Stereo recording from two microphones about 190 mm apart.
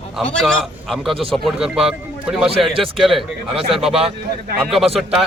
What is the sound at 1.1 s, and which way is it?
Speech, 30° right (ahead or behind).